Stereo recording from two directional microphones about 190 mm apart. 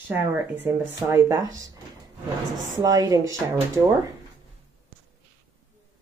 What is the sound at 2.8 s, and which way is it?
Speech, 20° right (ahead or behind).